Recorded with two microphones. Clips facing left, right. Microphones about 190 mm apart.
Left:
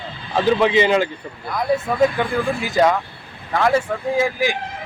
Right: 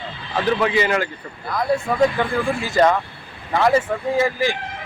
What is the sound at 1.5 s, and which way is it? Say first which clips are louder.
Speech: even; centre (ahead or behind).